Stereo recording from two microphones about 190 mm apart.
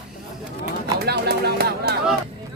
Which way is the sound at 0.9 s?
55° right (ahead or behind).